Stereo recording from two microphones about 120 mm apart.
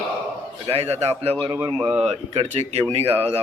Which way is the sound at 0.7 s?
60° right (ahead or behind).